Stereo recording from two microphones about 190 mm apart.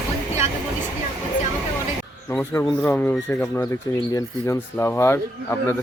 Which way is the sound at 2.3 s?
10° left (ahead or behind).